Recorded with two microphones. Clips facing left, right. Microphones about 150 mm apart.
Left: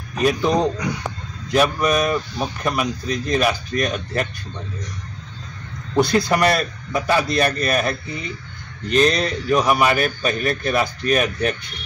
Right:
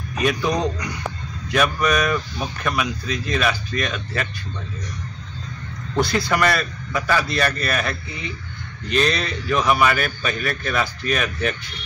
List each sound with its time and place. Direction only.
0.2 s speech: 30° left (ahead or behind)
5.9 s speech: 20° left (ahead or behind)
6.3 s speech: 35° left (ahead or behind)
8.9 s speech: 40° left (ahead or behind)
9.6 s a man's voice: 10° left (ahead or behind)
9.8 s speech: 40° left (ahead or behind)